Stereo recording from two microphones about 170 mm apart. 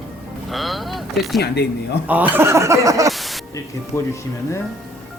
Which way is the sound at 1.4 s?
75° left (ahead or behind).